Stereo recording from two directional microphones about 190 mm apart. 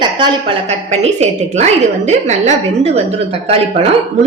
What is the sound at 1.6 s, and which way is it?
A woman's voice, 35° right (ahead or behind).